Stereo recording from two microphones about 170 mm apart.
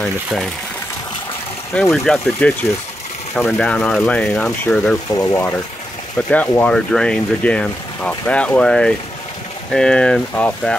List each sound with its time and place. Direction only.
1.7 s speech: 5° left (ahead or behind)
5.1 s speech: 20° left (ahead or behind)